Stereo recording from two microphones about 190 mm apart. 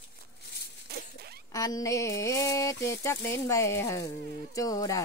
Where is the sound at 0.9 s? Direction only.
55° right (ahead or behind).